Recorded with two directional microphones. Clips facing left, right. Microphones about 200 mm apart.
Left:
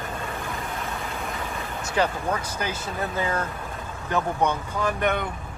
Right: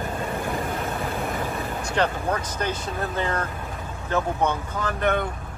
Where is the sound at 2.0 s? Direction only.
5° left (ahead or behind).